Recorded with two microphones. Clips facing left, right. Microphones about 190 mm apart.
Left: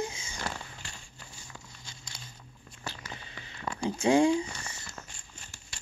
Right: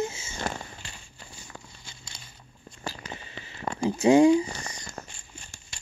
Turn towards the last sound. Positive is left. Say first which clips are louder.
# right 5 dB
turn(degrees=-45)  # may be behind; listen again after turning